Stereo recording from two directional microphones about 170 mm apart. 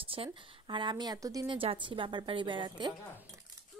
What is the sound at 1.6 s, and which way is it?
A woman's voice, 30° right (ahead or behind).